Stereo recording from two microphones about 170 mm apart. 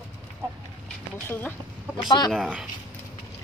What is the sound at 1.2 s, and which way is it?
Speech, 15° left (ahead or behind).